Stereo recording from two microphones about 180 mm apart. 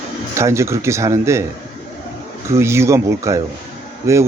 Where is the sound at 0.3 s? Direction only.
15° right (ahead or behind).